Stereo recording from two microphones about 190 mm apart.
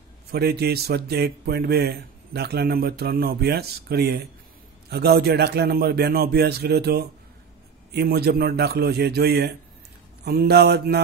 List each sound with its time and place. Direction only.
0.3 s speech: 55° right (ahead or behind)